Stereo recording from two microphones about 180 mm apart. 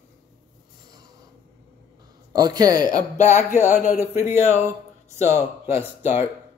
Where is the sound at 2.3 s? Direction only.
20° right (ahead or behind).